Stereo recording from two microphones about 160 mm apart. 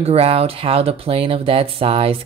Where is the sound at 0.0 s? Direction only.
40° right (ahead or behind).